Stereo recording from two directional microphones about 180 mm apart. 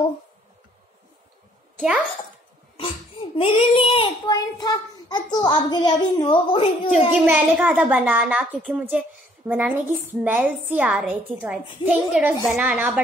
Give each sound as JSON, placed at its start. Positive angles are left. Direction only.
{"t": 2.8, "sound": "babbling", "side_deg": 30}
{"t": 4.3, "sound": "a child's voice", "side_deg": 20}
{"t": 7.2, "sound": "a woman's voice", "side_deg": -10}